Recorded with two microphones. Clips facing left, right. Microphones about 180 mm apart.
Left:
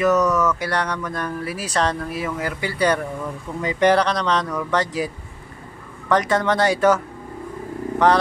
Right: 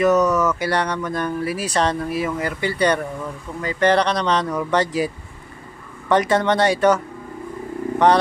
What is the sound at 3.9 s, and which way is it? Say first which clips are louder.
Speech: right 1 dB; centre (ahead or behind).